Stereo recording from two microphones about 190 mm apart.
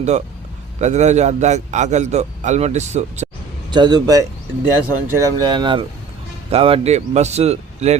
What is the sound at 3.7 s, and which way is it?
Speech, 25° right (ahead or behind).